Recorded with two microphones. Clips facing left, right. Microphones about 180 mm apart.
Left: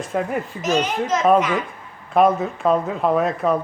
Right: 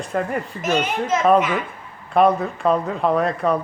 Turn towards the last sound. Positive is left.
turn(degrees=5)  # may be behind; listen again after turning